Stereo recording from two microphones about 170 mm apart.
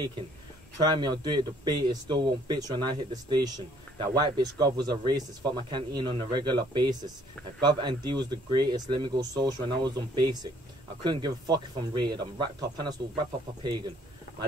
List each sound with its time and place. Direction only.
0.8 s speech: 25° right (ahead or behind)